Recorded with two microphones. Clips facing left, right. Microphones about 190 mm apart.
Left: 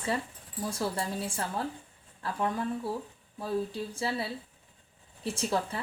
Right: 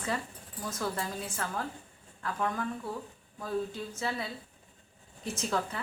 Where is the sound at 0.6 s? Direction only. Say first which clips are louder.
Left 2 dB; 30° left (ahead or behind).